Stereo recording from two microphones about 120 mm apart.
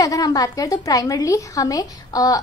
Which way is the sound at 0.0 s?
30° left (ahead or behind).